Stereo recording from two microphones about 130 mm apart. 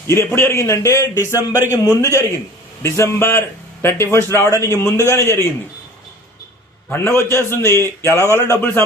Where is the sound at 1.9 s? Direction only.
20° left (ahead or behind).